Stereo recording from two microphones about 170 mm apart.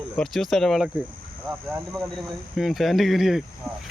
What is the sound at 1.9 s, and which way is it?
Speech, centre (ahead or behind).